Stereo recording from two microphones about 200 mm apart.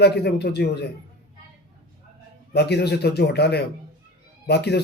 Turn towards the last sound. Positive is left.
turn(degrees=55)  # may be behind; listen again after turning